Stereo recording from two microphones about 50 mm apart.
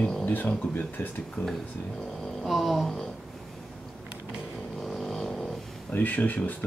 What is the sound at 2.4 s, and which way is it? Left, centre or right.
Speech, centre.